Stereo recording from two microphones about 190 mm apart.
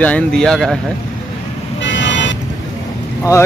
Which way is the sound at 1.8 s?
70° left (ahead or behind).